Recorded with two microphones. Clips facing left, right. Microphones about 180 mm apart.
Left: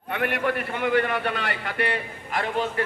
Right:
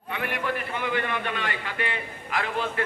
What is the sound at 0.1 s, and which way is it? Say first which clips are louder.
A man's voice: left 4 dB; 55° left (ahead or behind).